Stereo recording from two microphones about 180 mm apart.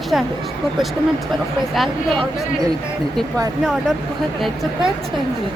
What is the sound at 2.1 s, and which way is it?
Speech, 30° right (ahead or behind).